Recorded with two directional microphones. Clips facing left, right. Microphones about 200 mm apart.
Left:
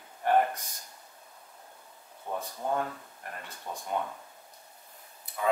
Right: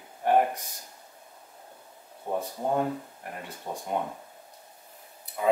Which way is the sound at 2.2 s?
20° right (ahead or behind).